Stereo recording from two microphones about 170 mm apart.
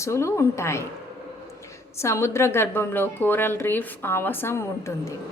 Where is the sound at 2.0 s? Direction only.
15° left (ahead or behind).